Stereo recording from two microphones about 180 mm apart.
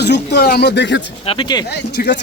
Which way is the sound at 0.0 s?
70° left (ahead or behind).